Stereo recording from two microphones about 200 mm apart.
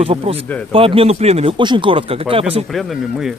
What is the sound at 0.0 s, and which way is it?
Speech, 30° right (ahead or behind).